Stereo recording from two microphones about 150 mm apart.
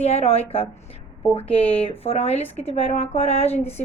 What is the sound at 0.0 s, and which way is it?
Speech, 45° left (ahead or behind).